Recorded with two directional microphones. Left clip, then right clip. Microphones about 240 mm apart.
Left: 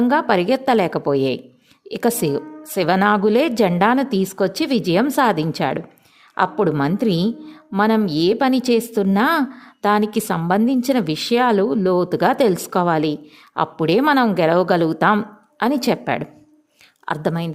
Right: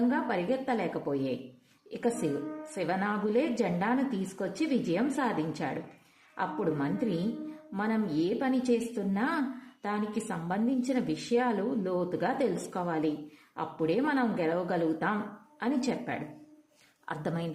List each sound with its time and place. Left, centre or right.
0.1 s a woman's voice: left